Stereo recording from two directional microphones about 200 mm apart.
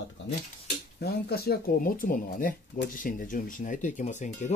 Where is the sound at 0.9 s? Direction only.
50° left (ahead or behind).